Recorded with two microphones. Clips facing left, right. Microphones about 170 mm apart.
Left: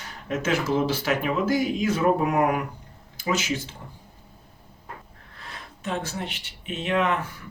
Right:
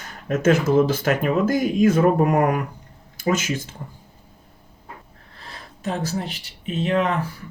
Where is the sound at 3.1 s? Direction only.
50° right (ahead or behind).